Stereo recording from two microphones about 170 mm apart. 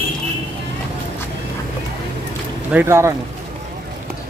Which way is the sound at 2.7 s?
15° right (ahead or behind).